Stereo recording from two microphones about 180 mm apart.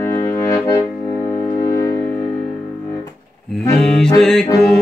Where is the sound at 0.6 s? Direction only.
15° left (ahead or behind).